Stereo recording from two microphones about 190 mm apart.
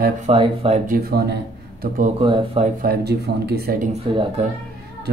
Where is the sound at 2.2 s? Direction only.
25° right (ahead or behind).